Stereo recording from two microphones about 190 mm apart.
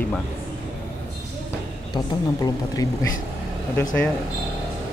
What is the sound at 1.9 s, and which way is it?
Speech, 20° left (ahead or behind).